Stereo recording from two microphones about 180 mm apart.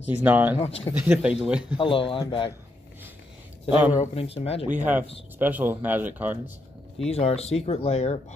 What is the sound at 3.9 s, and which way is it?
Speech, 35° left (ahead or behind).